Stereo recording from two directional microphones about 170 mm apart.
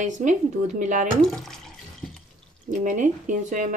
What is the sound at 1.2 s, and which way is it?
Speech, centre (ahead or behind).